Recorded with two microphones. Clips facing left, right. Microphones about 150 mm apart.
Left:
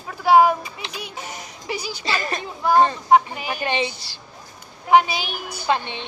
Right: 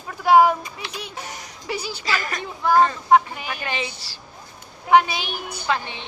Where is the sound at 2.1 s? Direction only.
25° left (ahead or behind).